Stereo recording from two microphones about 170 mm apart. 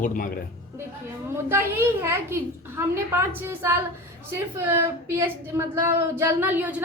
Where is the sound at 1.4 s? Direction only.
15° right (ahead or behind).